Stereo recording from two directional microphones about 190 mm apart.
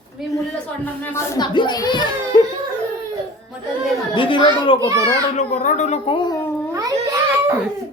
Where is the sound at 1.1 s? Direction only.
15° left (ahead or behind).